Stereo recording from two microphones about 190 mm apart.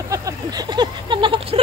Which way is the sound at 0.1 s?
20° right (ahead or behind).